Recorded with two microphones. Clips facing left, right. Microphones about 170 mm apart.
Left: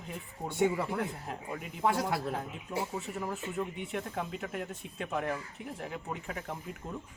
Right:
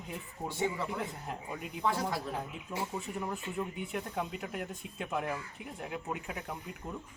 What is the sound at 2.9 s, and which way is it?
Speech, centre (ahead or behind).